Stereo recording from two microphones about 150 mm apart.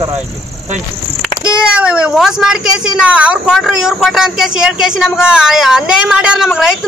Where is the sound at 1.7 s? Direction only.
5° right (ahead or behind).